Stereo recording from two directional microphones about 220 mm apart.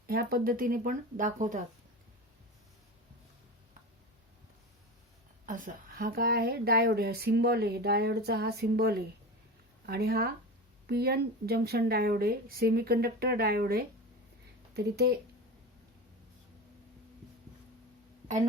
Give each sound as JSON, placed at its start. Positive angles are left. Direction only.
{"t": 0.1, "sound": "speech", "side_deg": -40}
{"t": 5.5, "sound": "speech", "side_deg": -35}